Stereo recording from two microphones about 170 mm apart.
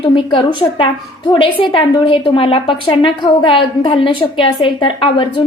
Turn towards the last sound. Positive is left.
turn(degrees=30)  # may be behind; listen again after turning